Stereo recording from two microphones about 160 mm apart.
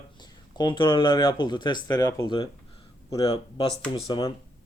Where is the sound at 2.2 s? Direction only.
30° left (ahead or behind).